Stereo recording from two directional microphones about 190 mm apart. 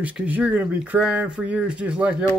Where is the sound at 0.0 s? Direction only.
5° right (ahead or behind).